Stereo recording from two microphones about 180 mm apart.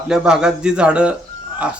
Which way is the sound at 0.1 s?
5° right (ahead or behind).